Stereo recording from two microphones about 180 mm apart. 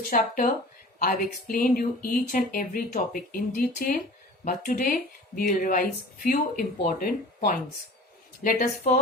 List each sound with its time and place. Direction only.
0.0 s speech: 50° left (ahead or behind)